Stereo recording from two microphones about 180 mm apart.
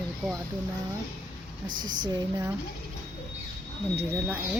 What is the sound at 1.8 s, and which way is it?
Speech, 25° right (ahead or behind).